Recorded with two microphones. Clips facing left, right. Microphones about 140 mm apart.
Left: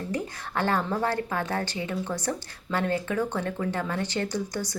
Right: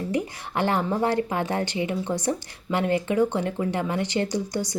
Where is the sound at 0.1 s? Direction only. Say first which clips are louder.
Right 4 dB; 15° right (ahead or behind).